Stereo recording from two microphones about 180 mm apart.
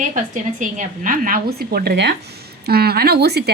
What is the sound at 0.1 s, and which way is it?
A woman's voice, 45° right (ahead or behind).